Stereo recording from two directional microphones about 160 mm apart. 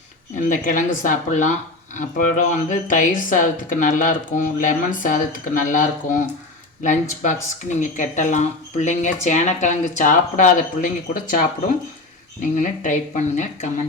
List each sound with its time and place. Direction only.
0.3 s speech: 55° left (ahead or behind)